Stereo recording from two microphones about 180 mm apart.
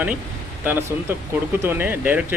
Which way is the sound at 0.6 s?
10° right (ahead or behind).